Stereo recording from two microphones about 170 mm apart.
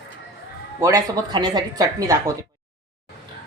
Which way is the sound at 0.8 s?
25° right (ahead or behind).